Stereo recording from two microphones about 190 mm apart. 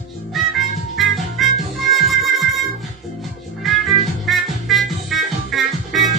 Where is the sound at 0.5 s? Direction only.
Centre (ahead or behind).